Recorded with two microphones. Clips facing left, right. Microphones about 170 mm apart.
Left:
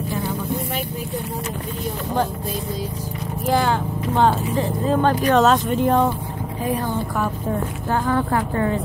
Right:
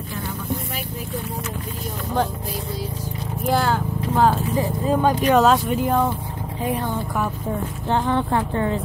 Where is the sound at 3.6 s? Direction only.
5° right (ahead or behind).